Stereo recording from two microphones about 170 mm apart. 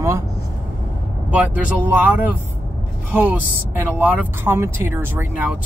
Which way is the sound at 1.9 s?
10° right (ahead or behind).